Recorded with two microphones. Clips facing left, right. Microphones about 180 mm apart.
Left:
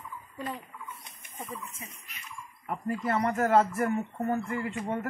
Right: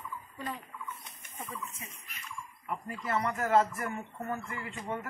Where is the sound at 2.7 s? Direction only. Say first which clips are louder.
Left 5 dB; 45° left (ahead or behind).